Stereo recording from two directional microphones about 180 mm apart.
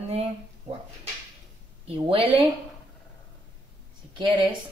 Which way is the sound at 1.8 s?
30° right (ahead or behind).